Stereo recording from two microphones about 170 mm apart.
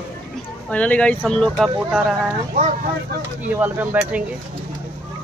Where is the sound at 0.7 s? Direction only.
10° left (ahead or behind).